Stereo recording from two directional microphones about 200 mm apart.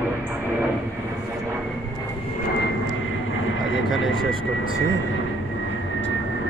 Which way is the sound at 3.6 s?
80° left.